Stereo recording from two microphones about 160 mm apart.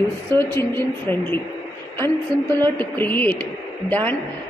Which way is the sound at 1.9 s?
15° left (ahead or behind).